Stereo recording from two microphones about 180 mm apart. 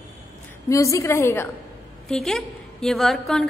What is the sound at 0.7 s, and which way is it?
Speech, 15° left (ahead or behind).